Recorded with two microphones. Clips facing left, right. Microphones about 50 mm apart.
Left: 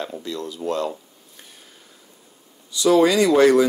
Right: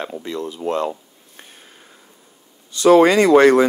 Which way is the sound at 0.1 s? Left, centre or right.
Right.